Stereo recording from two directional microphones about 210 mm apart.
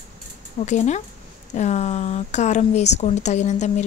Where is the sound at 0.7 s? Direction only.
35° left (ahead or behind).